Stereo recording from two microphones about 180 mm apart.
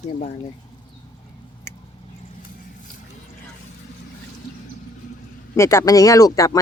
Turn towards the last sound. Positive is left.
turn(degrees=20)  # may be behind; listen again after turning